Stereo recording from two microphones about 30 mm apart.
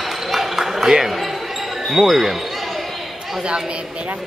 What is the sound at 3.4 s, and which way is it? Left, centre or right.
Speech, right.